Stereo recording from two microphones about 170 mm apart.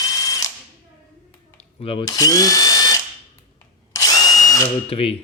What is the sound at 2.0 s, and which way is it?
Speech, 20° left (ahead or behind).